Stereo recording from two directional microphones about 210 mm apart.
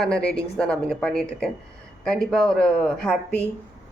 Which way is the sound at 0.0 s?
5° left (ahead or behind).